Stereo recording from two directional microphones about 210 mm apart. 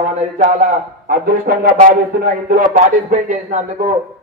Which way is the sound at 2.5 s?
40° right (ahead or behind).